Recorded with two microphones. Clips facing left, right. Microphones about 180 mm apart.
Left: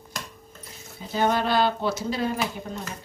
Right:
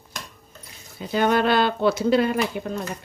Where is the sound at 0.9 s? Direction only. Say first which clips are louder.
Right 3 dB; 65° right (ahead or behind).